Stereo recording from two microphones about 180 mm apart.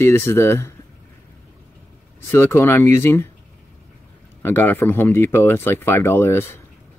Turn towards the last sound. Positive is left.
turn(degrees=15)  # may be behind; listen again after turning